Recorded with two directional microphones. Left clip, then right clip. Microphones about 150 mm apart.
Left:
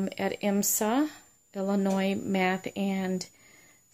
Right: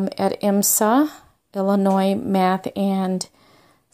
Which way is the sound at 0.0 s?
35° right (ahead or behind).